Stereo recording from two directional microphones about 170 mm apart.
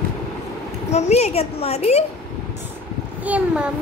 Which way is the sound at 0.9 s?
40° left (ahead or behind).